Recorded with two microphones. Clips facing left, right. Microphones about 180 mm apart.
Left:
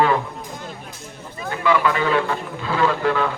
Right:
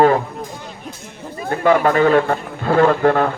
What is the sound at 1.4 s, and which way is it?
A man's voice, 45° right (ahead or behind).